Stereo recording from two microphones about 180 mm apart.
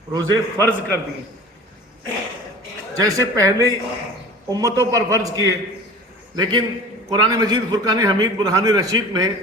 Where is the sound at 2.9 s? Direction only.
20° right (ahead or behind).